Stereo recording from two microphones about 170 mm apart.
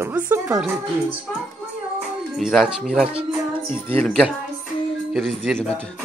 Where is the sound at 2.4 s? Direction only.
Centre (ahead or behind).